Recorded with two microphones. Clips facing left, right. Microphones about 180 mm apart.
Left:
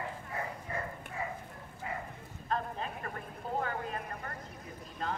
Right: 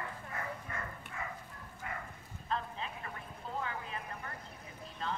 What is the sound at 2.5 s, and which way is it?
Vehicle, 50° left (ahead or behind).